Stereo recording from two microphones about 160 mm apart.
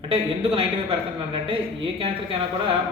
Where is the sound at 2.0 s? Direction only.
35° right (ahead or behind).